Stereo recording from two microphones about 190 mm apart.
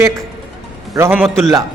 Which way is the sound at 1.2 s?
Centre (ahead or behind).